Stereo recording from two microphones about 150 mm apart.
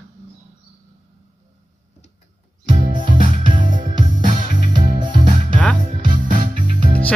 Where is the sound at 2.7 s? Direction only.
60° right (ahead or behind).